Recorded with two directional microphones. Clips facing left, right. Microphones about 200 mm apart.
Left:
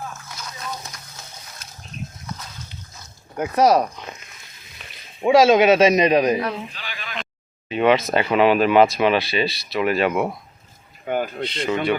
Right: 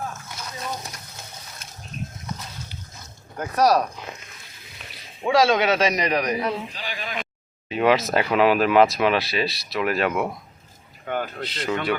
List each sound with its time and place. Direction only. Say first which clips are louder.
3.3 s a man's voice: left 3 dB; 20° left (ahead or behind)
5.2 s a man's voice: left 5 dB; 20° left (ahead or behind)
6.7 s a sound: right 4 dB; 40° right (ahead or behind)
7.8 s speech: left 2 dB; centre (ahead or behind)
11.0 s speech: left 4 dB; 15° left (ahead or behind)
11.4 s speech: left 3 dB; centre (ahead or behind)